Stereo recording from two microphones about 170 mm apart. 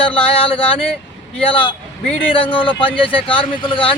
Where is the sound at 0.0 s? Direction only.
30° left (ahead or behind).